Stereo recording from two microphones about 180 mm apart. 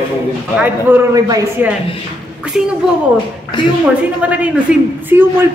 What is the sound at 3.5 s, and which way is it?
Speech, 25° left (ahead or behind).